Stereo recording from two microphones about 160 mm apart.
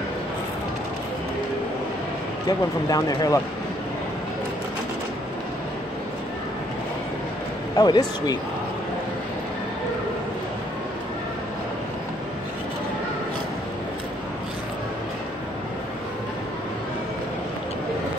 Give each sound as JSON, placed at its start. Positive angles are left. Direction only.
{"t": 2.9, "sound": "speech", "side_deg": 25}
{"t": 7.7, "sound": "speech", "side_deg": 25}